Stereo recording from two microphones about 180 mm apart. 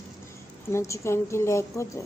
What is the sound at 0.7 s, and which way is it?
A woman's voice, 15° left (ahead or behind).